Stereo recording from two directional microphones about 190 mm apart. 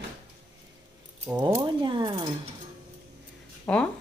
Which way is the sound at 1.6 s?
25° right (ahead or behind).